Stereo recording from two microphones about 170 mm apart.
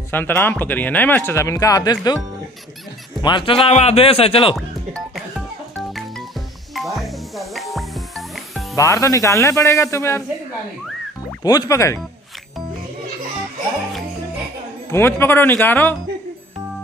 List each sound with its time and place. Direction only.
0.1 s speech: 10° left (ahead or behind)
3.2 s speech: 25° left (ahead or behind)
4.6 s speech: centre (ahead or behind)
5.8 s music: centre (ahead or behind)
8.7 s speech: 15° left (ahead or behind)
11.4 s speech: 20° left (ahead or behind)
14.9 s speech: 15° left (ahead or behind)